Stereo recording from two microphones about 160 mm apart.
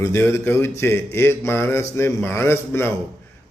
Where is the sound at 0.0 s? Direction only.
15° left (ahead or behind).